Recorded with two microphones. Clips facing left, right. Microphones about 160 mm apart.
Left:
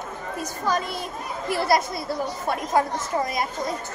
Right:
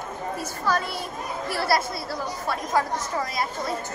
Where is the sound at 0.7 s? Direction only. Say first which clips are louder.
Even; 15° left (ahead or behind).